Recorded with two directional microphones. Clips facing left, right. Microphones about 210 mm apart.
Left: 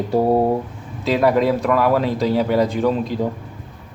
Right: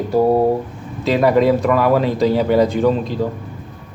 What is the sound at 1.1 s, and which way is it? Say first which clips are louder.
Speech: right 3 dB; centre (ahead or behind).